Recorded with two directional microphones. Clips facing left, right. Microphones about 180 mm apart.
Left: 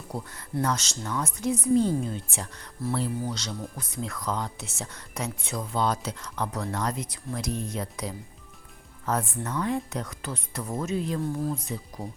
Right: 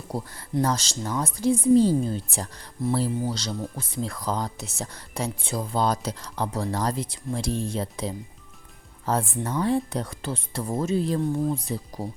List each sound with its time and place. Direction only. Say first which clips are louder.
0.1 s speech: right 4 dB; 35° right (ahead or behind)
2.8 s speech: right 4 dB; 20° right (ahead or behind)
3.2 s speech: right 4 dB; 35° right (ahead or behind)